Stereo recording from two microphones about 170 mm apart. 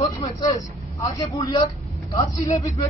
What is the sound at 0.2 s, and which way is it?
A man's voice, 20° left (ahead or behind).